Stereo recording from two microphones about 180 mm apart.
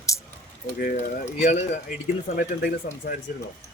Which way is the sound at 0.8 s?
50° left (ahead or behind).